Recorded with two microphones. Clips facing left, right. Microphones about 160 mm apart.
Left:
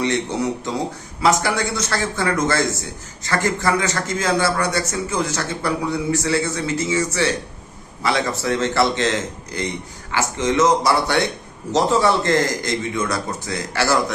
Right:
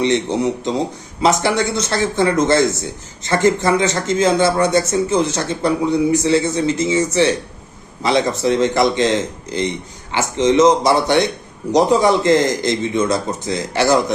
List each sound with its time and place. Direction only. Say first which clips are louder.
0.0 s speech: right 4 dB; 20° right (ahead or behind)